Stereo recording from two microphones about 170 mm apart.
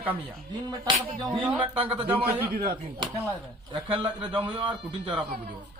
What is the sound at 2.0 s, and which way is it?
Speech, 10° right (ahead or behind).